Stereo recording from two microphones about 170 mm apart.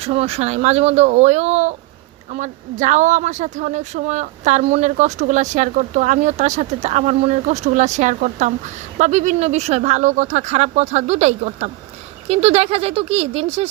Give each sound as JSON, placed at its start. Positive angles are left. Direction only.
{"t": 0.0, "sound": "speech", "side_deg": -35}